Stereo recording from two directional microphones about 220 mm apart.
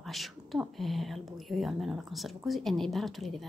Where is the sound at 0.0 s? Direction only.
Centre (ahead or behind).